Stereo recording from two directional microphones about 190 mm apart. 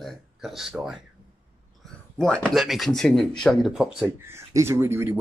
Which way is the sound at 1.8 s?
5° left (ahead or behind).